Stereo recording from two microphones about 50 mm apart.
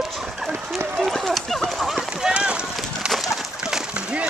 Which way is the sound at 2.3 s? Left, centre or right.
Right.